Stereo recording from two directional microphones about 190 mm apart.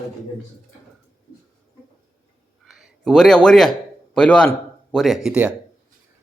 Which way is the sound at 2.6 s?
Centre (ahead or behind).